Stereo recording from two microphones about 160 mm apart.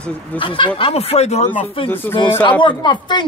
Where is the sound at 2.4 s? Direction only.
30° left (ahead or behind).